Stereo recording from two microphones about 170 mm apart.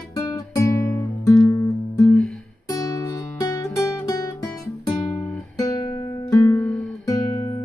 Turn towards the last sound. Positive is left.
turn(degrees=15)  # may be behind; listen again after turning